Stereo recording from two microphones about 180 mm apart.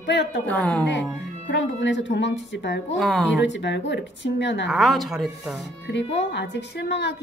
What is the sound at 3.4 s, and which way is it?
A woman's voice, 80° left.